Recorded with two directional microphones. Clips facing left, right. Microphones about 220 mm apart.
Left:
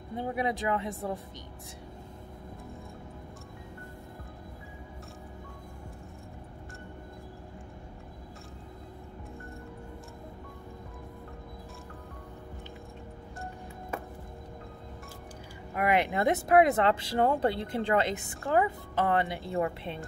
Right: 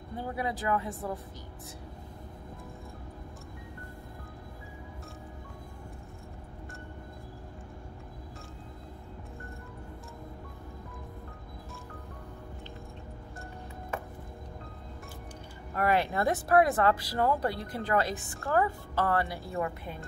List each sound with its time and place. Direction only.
0.1 s speech: 20° left (ahead or behind)
15.7 s speech: 15° left (ahead or behind)